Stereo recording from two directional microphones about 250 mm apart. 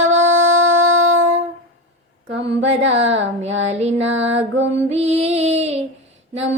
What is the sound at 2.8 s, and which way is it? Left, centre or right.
Music, right.